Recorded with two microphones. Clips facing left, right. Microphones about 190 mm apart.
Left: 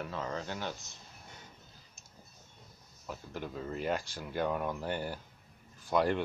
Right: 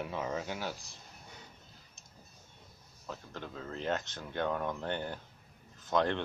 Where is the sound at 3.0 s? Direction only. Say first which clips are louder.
Left 2 dB; 10° left (ahead or behind).